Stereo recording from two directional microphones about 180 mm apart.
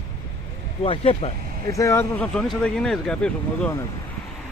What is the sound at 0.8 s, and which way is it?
Speech, 35° left (ahead or behind).